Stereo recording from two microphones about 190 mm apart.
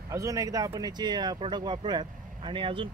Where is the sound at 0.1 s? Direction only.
15° right (ahead or behind).